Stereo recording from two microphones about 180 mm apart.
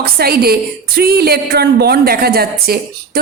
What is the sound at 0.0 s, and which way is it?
A woman's voice, 60° right (ahead or behind).